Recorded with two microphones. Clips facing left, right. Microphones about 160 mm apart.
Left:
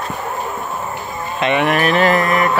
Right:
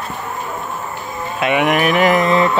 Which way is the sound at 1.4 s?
10° right (ahead or behind).